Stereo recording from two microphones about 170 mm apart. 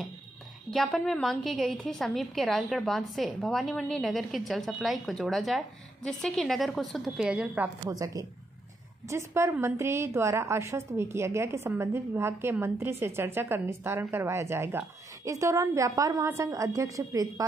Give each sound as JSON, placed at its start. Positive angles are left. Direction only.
{"t": 0.7, "sound": "a woman's voice", "side_deg": 0}
{"t": 7.9, "sound": "a woman's voice", "side_deg": -20}